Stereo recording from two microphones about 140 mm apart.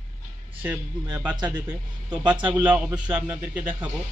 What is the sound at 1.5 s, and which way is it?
A man's voice, 30° right (ahead or behind).